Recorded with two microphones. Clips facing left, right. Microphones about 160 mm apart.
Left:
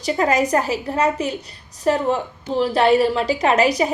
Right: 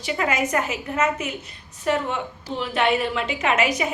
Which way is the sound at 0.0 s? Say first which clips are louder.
Left 5 dB; 35° left (ahead or behind).